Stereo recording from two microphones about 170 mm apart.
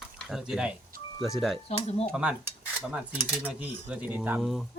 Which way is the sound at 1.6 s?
35° left (ahead or behind).